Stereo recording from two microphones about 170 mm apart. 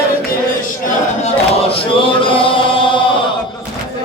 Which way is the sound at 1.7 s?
30° left (ahead or behind).